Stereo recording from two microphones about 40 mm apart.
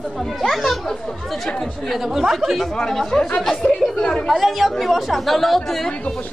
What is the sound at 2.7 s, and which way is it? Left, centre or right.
Speech, centre.